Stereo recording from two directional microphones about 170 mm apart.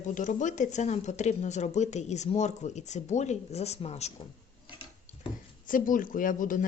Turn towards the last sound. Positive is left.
turn(degrees=50)  # may be behind; listen again after turning